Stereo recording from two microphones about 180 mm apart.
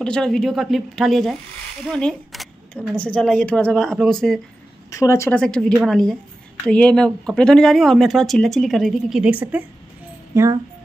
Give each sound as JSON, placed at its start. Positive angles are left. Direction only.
{"t": 0.0, "sound": "speech", "side_deg": 5}
{"t": 4.9, "sound": "a woman's voice", "side_deg": 15}
{"t": 5.4, "sound": "speech", "side_deg": 5}